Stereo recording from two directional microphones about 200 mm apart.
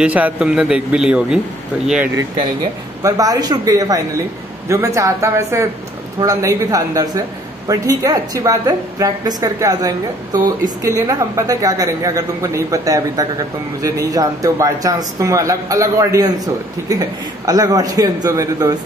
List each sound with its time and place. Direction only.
0.0 s speech: 5° right (ahead or behind)
2.1 s a man's voice: 20° right (ahead or behind)